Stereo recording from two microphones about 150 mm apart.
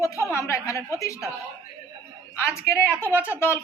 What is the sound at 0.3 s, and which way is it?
Speech, 20° left (ahead or behind).